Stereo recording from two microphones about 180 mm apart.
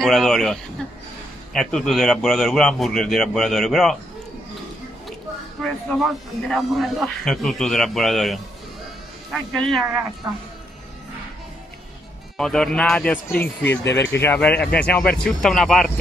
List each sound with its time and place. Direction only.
0.0 s a sound: centre (ahead or behind)
1.5 s speech: 5° left (ahead or behind)
5.6 s a sound: centre (ahead or behind)
6.5 s speech: centre (ahead or behind)
10.2 s speech: 20° right (ahead or behind)
12.4 s speech: 5° left (ahead or behind)
13.8 s speech: 70° left (ahead or behind)
14.2 s speech: 10° left (ahead or behind)